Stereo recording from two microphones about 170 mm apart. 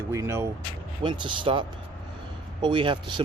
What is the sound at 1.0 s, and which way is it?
Speech, 30° right (ahead or behind).